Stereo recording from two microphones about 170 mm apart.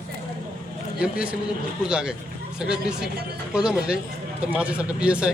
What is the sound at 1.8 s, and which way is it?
Speech, 5° right (ahead or behind).